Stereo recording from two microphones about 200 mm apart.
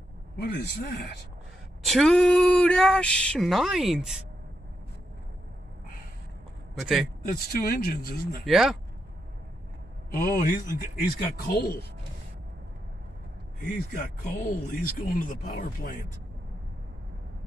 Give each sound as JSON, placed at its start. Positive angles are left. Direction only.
{"t": 0.4, "sound": "speech", "side_deg": 55}
{"t": 1.8, "sound": "speech", "side_deg": 0}
{"t": 6.8, "sound": "speech", "side_deg": 0}
{"t": 7.3, "sound": "a man's voice", "side_deg": 50}
{"t": 8.5, "sound": "speech", "side_deg": 0}
{"t": 10.1, "sound": "a man's voice", "side_deg": 45}
{"t": 13.7, "sound": "a man's voice", "side_deg": 50}